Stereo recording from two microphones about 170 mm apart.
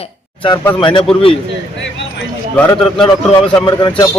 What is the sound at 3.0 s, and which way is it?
Speech, 30° left (ahead or behind).